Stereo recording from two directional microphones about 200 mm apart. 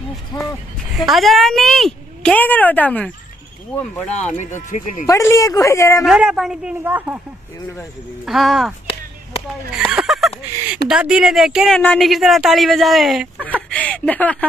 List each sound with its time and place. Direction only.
0.9 s speech: centre (ahead or behind)
4.4 s speech: 40° left (ahead or behind)
5.0 s speech: 15° left (ahead or behind)
6.0 s speech: 5° right (ahead or behind)
8.3 s speech: centre (ahead or behind)
9.8 s a sound: centre (ahead or behind)
10.9 s speech: 5° right (ahead or behind)
13.6 s a sound: 5° left (ahead or behind)